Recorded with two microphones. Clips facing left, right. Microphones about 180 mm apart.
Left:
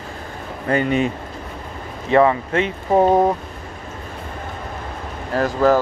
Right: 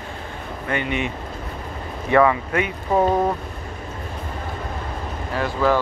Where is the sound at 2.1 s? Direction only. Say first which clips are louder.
Left 2 dB; 30° left (ahead or behind).